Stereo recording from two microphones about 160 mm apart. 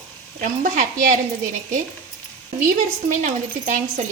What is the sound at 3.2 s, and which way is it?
Speech, 55° right (ahead or behind).